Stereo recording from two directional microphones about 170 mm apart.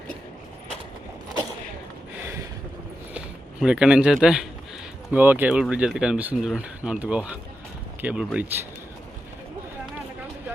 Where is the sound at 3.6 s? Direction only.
5° right (ahead or behind).